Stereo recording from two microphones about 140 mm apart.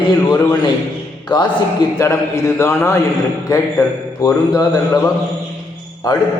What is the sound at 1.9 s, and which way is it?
A man's voice, 20° left (ahead or behind).